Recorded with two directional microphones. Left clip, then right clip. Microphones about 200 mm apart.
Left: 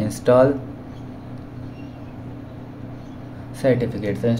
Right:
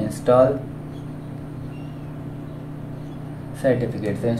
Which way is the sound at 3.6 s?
45° left (ahead or behind).